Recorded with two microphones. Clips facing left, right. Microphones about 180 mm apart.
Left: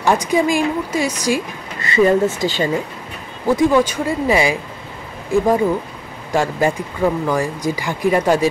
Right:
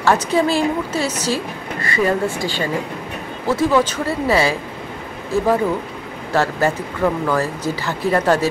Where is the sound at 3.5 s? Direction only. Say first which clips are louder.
Left 2 dB; 10° left (ahead or behind).